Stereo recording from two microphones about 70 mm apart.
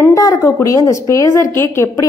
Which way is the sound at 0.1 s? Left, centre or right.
Left.